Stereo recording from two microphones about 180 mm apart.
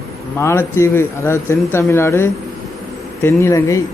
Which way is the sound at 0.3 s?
15° left (ahead or behind).